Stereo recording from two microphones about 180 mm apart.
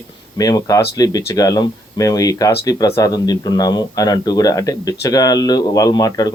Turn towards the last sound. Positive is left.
turn(degrees=20)  # may be behind; listen again after turning